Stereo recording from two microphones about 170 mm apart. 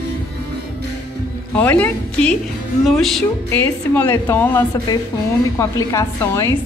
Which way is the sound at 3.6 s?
10° left (ahead or behind).